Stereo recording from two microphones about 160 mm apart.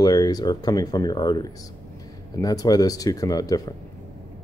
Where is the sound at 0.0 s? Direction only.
25° left (ahead or behind).